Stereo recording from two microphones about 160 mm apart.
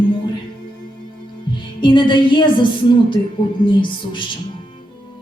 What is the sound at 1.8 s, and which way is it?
A woman's voice, 30° left (ahead or behind).